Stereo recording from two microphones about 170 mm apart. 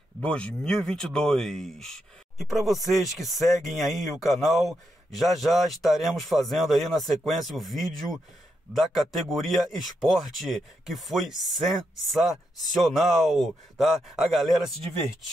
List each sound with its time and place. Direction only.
0.2 s speech: 5° left (ahead or behind)